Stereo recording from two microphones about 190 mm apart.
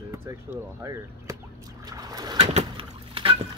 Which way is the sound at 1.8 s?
20° right (ahead or behind).